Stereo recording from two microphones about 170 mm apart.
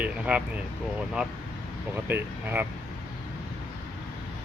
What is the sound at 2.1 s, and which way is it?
Speech, 10° right (ahead or behind).